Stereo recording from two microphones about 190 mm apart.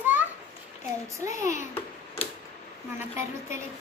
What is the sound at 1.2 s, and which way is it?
Child singing, 15° right (ahead or behind).